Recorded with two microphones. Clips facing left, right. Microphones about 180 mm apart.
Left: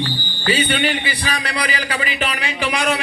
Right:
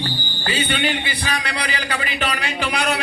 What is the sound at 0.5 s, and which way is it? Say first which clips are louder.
Speech: left 1 dB; 55° left (ahead or behind).